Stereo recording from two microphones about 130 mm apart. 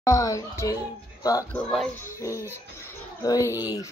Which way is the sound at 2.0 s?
20° left (ahead or behind).